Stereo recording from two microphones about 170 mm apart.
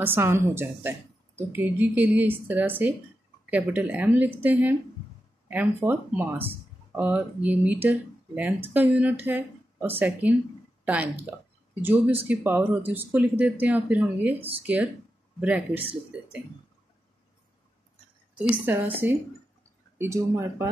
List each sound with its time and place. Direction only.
0.0 s speech: 10° right (ahead or behind)
18.5 s speech: 10° right (ahead or behind)